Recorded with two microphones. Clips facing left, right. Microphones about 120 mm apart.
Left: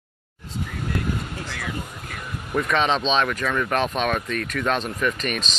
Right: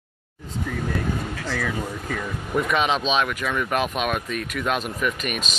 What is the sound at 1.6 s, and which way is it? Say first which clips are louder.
Speech: right 4 dB; 90° right.